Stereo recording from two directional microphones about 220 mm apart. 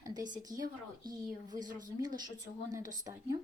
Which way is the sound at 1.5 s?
35° right (ahead or behind).